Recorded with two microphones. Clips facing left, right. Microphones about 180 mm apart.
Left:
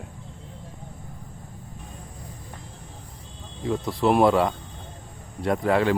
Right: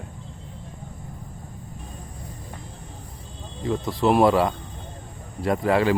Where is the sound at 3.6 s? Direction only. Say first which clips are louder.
Right 1 dB; centre (ahead or behind).